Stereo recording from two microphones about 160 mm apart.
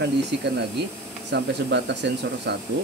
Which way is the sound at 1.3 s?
90° right.